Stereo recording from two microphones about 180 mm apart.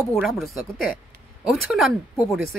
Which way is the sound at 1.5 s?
Centre (ahead or behind).